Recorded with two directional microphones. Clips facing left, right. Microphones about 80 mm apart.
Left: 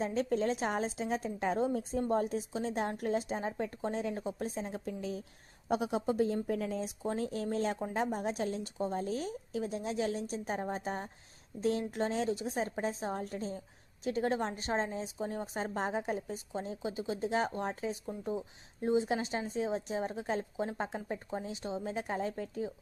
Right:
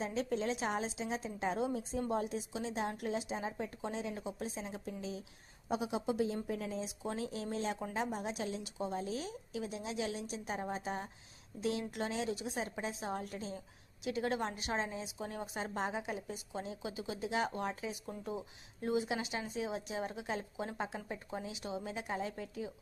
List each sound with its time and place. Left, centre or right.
0.0 s a woman's voice: left
18.8 s a woman's voice: left